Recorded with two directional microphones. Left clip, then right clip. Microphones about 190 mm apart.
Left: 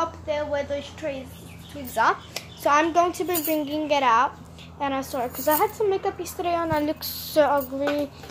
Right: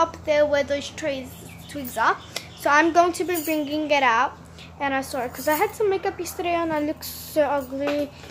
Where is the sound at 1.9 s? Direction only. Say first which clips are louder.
Even; 5° left (ahead or behind).